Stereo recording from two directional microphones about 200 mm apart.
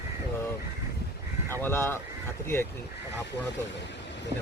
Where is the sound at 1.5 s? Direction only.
10° left (ahead or behind).